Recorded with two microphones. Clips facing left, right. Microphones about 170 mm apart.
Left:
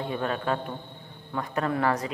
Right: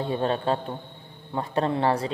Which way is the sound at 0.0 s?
30° right (ahead or behind).